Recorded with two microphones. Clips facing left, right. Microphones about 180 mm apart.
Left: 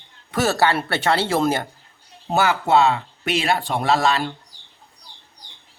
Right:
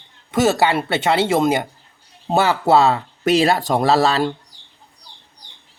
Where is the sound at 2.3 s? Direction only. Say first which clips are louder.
Right 3 dB; 30° right (ahead or behind).